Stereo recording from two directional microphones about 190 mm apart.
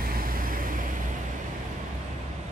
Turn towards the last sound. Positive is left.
turn(degrees=-45)  # may be behind; listen again after turning